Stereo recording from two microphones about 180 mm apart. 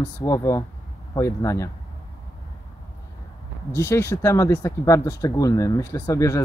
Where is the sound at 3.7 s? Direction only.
15° left (ahead or behind).